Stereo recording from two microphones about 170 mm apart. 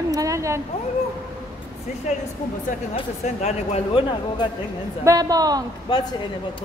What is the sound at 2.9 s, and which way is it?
Speech, 40° left (ahead or behind).